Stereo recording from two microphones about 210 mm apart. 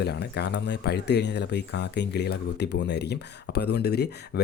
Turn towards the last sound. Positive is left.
turn(degrees=50)  # may be behind; listen again after turning